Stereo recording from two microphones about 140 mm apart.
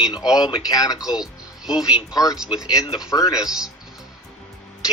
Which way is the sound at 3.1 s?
25° left (ahead or behind).